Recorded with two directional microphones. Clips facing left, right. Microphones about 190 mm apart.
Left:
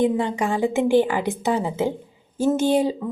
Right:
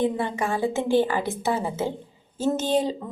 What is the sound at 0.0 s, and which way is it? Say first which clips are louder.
Speech: left 4 dB; 15° left (ahead or behind).